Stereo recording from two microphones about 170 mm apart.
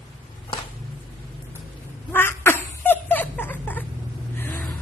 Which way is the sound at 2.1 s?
15° left (ahead or behind).